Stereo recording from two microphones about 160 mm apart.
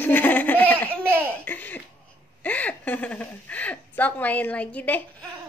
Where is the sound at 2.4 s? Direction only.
10° left (ahead or behind).